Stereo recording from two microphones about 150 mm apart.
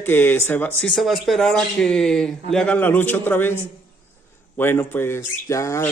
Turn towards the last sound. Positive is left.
turn(degrees=20)  # may be behind; listen again after turning